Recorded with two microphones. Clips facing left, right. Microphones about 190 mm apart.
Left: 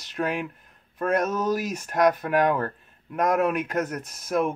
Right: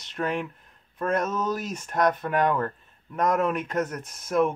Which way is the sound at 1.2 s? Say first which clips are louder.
Left 3 dB; 15° left (ahead or behind).